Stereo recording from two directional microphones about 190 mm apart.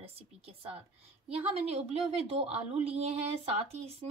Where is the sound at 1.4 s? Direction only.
30° right (ahead or behind).